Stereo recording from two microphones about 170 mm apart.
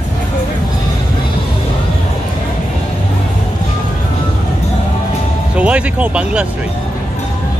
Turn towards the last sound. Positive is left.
turn(degrees=-5)  # may be behind; listen again after turning